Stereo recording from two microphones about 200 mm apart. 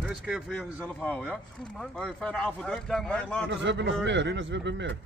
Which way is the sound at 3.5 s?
60° right (ahead or behind).